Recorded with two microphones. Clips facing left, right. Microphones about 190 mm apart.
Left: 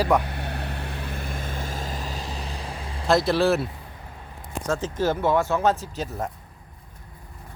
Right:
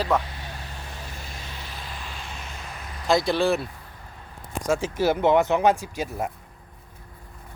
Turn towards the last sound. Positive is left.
turn(degrees=-10)  # may be behind; listen again after turning